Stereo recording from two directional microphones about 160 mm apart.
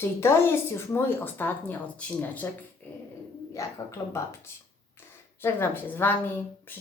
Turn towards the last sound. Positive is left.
turn(degrees=10)  # may be behind; listen again after turning